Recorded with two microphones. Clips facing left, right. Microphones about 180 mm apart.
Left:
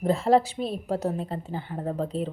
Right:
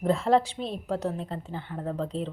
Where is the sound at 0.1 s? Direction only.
5° left (ahead or behind).